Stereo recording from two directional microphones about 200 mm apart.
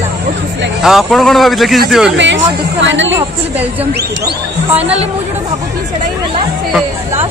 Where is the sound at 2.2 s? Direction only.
65° right (ahead or behind).